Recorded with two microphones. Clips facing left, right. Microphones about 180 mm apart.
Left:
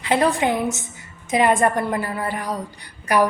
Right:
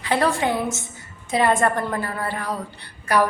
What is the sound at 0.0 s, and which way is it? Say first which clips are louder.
A woman's voice: left 2 dB; 20° left (ahead or behind).